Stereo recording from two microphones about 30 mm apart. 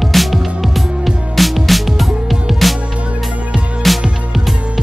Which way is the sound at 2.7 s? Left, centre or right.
Right.